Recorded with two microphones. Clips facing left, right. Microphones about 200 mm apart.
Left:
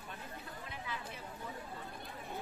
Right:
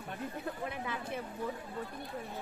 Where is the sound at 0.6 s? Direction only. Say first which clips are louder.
Right 7 dB; 55° right (ahead or behind).